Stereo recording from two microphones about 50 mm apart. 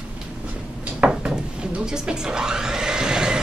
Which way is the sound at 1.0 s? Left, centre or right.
Right.